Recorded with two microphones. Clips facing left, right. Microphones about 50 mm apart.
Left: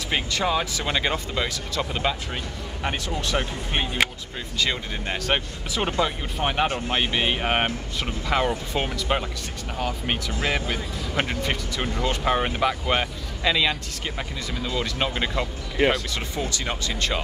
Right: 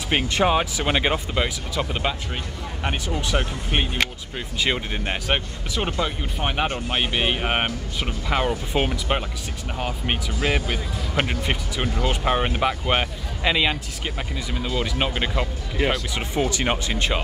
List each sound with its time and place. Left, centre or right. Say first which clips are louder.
0.1 s speech: right 4 dB; right; by 3.3 s centre
3.3 s speech: right 2 dB; right
5.2 s speech: even; centre
6.9 s speech: even; centre
8.7 s speech: right 4 dB; right
10.4 s speech: right 3 dB; right
16.6 s speech: right 4 dB; right